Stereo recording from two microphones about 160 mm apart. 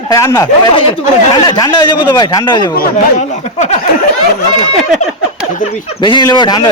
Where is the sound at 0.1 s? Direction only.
20° left (ahead or behind).